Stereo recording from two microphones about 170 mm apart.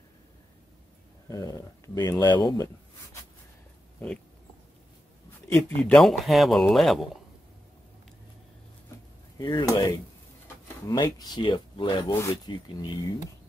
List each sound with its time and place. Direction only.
1.3 s speech: 20° left (ahead or behind)
5.5 s speech: 5° left (ahead or behind)
9.4 s speech: 25° left (ahead or behind)